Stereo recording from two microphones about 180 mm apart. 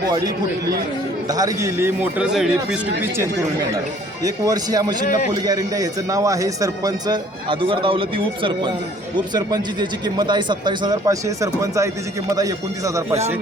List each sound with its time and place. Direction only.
1.3 s a man's voice: 20° right (ahead or behind); by 2.5 s 5° right (ahead or behind)
4.2 s speech: 20° right (ahead or behind)
5.0 s a man's voice: 50° left (ahead or behind)
5.3 s speech: 20° right (ahead or behind)